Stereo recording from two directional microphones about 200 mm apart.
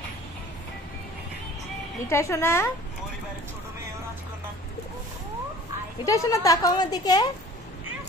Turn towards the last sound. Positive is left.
turn(degrees=20)  # may be behind; listen again after turning